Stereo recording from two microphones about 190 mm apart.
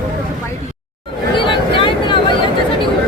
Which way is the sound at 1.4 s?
25° left (ahead or behind).